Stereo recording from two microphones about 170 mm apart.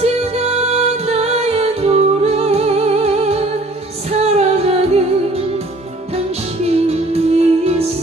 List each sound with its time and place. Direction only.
0.7 s music: 40° right (ahead or behind)
6.1 s music: 40° right (ahead or behind)